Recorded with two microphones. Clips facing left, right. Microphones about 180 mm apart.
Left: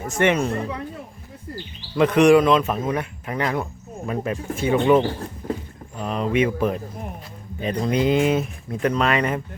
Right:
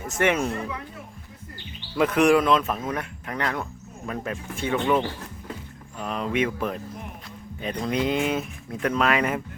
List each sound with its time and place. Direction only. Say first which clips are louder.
0.2 s speech: left 3 dB; 5° right (ahead or behind)
0.5 s speech: left 4 dB; 35° left (ahead or behind)
2.0 s speech: left 5 dB; 5° right (ahead or behind)
4.9 s speech: left 6 dB; 35° left (ahead or behind)
6.0 s speech: left 4 dB; centre (ahead or behind)